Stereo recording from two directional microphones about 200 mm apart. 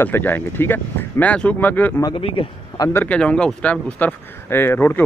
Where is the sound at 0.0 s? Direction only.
10° left (ahead or behind).